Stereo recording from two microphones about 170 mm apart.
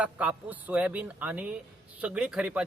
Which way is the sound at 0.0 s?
10° right (ahead or behind).